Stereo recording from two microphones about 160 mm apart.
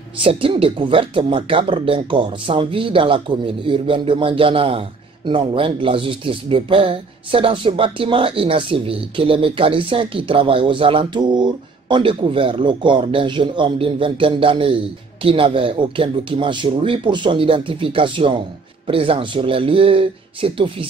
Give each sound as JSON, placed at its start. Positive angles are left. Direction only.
{"t": 0.2, "sound": "speech", "side_deg": -35}